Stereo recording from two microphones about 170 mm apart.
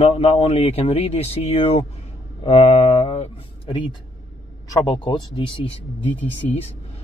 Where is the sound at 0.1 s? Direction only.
35° left (ahead or behind).